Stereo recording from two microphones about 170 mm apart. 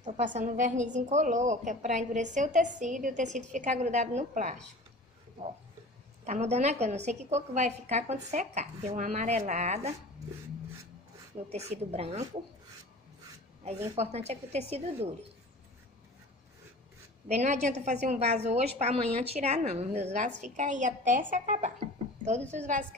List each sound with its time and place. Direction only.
0.0 s a woman's voice: 45° right (ahead or behind)
6.2 s a woman's voice: 40° right (ahead or behind)
11.5 s a woman's voice: 40° right (ahead or behind)
13.9 s a woman's voice: 40° right (ahead or behind)
17.3 s a woman's voice: 40° right (ahead or behind)